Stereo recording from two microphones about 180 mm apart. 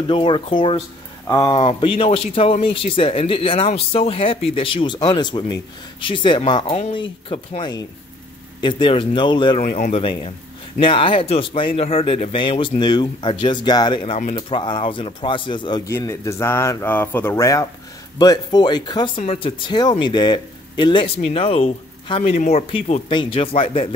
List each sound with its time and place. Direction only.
0.1 s speech: 30° left (ahead or behind)
9.6 s speech: 45° left (ahead or behind); by 15.8 s 25° left (ahead or behind)
15.9 s speech: 15° left (ahead or behind); by 23.9 s 30° left (ahead or behind)